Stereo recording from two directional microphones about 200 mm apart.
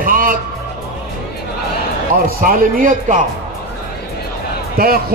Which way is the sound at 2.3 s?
45° right (ahead or behind).